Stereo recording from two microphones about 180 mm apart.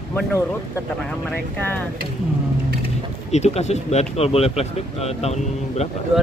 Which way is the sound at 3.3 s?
40° left (ahead or behind).